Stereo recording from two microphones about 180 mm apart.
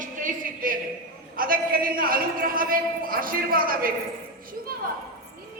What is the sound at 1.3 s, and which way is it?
A man's voice, 55° right (ahead or behind).